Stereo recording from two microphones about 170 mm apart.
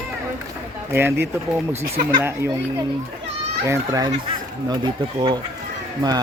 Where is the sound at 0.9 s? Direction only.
15° right (ahead or behind).